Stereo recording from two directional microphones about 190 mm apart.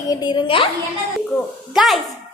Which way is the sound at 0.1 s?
25° left (ahead or behind).